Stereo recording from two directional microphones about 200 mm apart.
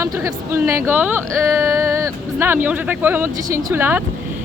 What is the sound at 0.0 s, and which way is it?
Speech, 15° right (ahead or behind).